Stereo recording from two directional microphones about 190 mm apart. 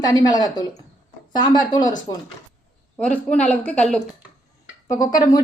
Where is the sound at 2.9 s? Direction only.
5° left (ahead or behind).